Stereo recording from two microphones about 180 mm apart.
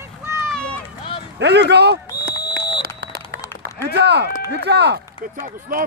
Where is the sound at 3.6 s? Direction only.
65° right (ahead or behind).